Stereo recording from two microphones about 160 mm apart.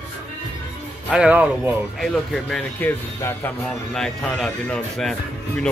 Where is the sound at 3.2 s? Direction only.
15° left (ahead or behind).